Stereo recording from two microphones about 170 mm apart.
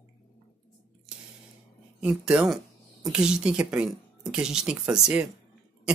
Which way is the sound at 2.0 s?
5° right (ahead or behind).